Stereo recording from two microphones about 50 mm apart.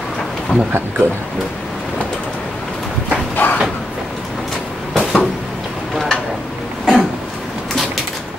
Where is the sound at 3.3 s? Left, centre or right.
Left.